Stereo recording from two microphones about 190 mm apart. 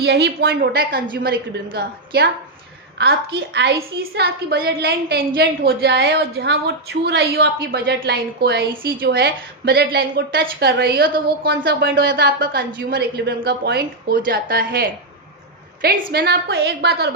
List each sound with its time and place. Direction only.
0.0 s a woman's voice: 60° right (ahead or behind)